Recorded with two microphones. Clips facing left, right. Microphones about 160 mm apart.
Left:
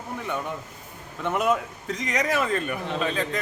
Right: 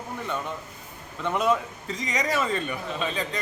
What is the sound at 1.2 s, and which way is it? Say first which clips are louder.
A man's voice: even; 5° left (ahead or behind).